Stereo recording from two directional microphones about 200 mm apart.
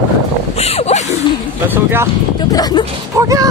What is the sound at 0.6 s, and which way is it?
Speech, 30° left (ahead or behind).